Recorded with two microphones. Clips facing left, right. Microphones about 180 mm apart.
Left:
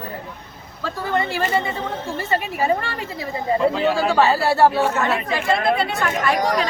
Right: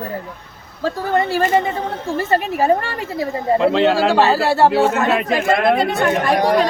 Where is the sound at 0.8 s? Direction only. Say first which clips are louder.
Right 5 dB; 40° right (ahead or behind).